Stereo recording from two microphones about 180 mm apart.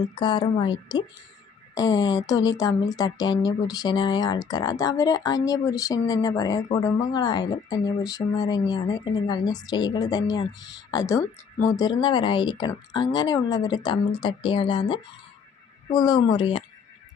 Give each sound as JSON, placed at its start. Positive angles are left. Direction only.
{"t": 0.0, "sound": "speech", "side_deg": 25}